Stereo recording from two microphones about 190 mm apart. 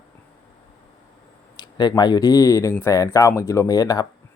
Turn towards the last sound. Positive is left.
turn(degrees=20)  # may be behind; listen again after turning